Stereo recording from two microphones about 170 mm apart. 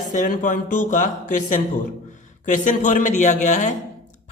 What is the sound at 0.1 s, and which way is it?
A man's voice, 50° left (ahead or behind).